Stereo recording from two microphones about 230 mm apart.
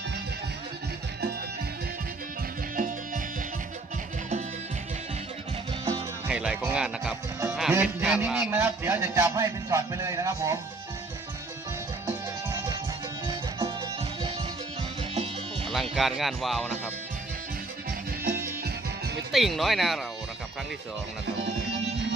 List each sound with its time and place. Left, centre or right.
5.8 s music: centre
7.5 s speech: centre
12.0 s music: centre
15.1 s music: right
15.7 s speech: centre
18.2 s music: right
19.3 s speech: centre